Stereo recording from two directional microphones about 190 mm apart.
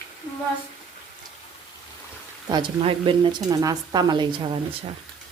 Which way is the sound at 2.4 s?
25° right (ahead or behind).